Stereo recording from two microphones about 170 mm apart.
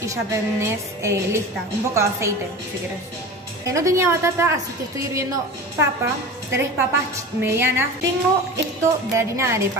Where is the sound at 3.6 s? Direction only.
20° right (ahead or behind).